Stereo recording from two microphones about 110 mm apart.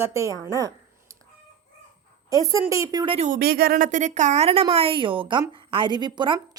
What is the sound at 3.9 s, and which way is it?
Speech, 90° right.